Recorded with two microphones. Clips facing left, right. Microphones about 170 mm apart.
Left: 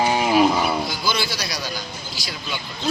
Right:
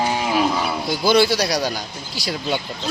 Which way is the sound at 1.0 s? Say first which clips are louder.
Right 9 dB; 60° right (ahead or behind).